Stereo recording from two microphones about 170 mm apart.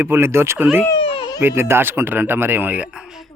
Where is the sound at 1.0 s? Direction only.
30° left (ahead or behind).